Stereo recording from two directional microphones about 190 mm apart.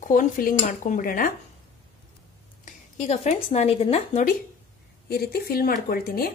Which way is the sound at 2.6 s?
35° left (ahead or behind).